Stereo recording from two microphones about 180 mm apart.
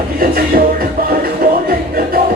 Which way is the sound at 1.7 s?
55° right (ahead or behind).